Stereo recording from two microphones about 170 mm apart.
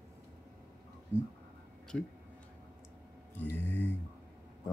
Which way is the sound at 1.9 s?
5° left (ahead or behind).